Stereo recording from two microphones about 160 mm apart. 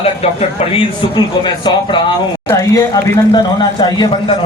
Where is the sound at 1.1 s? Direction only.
30° left (ahead or behind).